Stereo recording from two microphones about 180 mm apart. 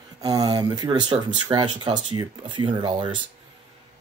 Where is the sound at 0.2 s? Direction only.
20° right (ahead or behind).